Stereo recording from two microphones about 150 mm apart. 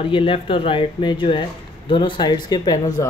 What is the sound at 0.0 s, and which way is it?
Speech, 35° left (ahead or behind).